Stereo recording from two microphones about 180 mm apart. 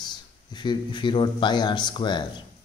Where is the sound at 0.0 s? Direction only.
25° left (ahead or behind).